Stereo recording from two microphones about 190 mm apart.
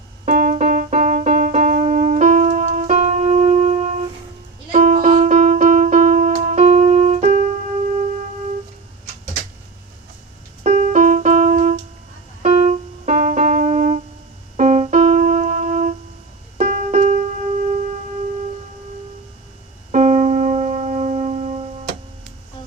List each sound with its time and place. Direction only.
0.3 s music: 45° right (ahead or behind)
10.6 s piano: 40° right (ahead or behind)
14.5 s keyboard: 35° right (ahead or behind)
16.6 s music: 40° right (ahead or behind)
19.9 s music: 40° right (ahead or behind)